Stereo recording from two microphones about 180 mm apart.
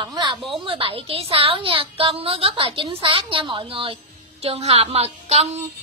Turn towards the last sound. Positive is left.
turn(degrees=-35)  # may be behind; listen again after turning